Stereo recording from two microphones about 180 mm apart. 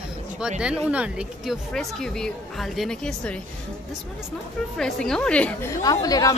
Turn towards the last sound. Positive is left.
turn(degrees=20)  # may be behind; listen again after turning